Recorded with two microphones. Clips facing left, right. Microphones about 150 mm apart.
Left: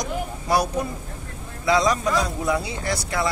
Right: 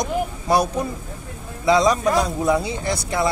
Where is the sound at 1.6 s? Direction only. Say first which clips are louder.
Right 3 dB; 25° right (ahead or behind).